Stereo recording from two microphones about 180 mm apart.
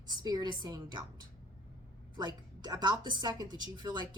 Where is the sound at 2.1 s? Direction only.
25° right (ahead or behind).